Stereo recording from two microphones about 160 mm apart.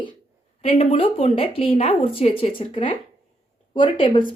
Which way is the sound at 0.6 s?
35° left (ahead or behind).